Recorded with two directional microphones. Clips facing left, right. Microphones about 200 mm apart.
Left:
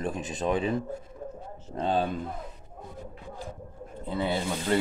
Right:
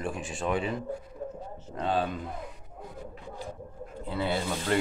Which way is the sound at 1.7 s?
35° left (ahead or behind).